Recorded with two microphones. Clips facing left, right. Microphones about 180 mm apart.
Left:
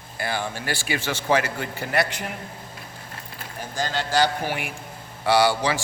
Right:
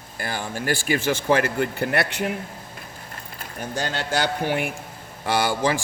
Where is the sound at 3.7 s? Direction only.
60° right (ahead or behind).